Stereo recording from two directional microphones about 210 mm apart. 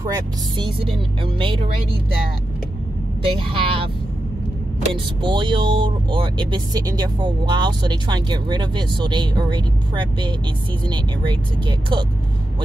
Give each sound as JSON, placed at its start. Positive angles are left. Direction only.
{"t": 0.0, "sound": "speech", "side_deg": -20}
{"t": 3.2, "sound": "speech", "side_deg": -25}
{"t": 5.2, "sound": "speech", "side_deg": -20}